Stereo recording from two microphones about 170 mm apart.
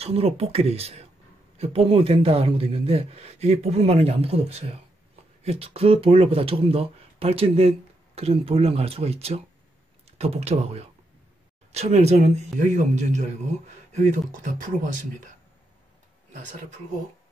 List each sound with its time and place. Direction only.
0.0 s speech: 35° right (ahead or behind)
14.3 s speech: 50° right (ahead or behind)